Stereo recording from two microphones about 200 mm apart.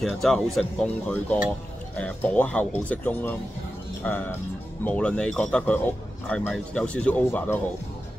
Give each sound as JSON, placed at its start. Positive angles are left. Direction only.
{"t": 0.2, "sound": "speech", "side_deg": 0}